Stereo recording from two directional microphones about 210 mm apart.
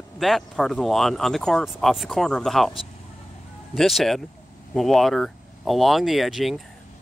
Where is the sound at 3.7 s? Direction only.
Centre (ahead or behind).